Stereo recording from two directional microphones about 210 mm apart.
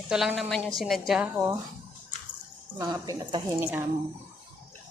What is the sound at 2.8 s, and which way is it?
Speech, 15° right (ahead or behind).